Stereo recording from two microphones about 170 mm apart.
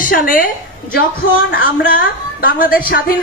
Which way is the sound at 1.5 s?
55° left (ahead or behind).